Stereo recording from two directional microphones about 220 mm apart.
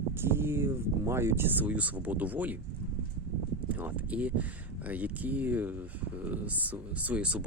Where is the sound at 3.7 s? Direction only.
5° right (ahead or behind).